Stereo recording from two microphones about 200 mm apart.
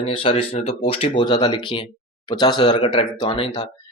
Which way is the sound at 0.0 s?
25° left (ahead or behind).